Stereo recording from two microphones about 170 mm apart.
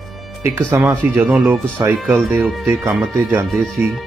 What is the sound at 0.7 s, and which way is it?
Speech, 10° right (ahead or behind).